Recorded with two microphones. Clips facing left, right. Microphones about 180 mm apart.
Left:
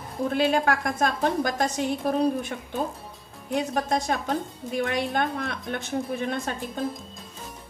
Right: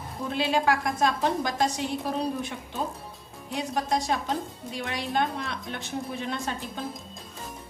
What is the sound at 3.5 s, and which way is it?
A woman's voice, 50° left (ahead or behind).